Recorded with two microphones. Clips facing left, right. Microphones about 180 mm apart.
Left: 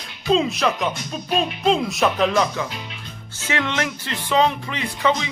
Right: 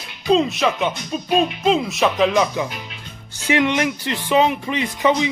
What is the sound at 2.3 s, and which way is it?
Speech, 15° right (ahead or behind).